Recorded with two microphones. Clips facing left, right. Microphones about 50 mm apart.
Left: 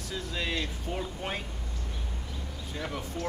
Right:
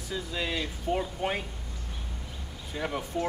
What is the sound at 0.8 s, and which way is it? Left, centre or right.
Speech, centre.